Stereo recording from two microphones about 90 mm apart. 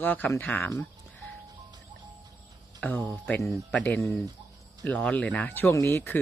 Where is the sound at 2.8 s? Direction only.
15° left (ahead or behind).